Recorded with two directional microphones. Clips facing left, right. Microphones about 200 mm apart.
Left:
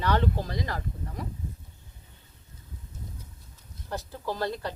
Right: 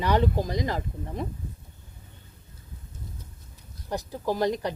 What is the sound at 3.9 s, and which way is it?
Speech, 15° right (ahead or behind).